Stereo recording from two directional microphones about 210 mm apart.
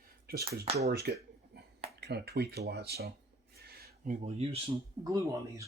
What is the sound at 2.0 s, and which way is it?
Speech, 50° right (ahead or behind).